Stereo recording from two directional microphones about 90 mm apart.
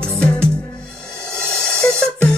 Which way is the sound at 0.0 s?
10° left (ahead or behind).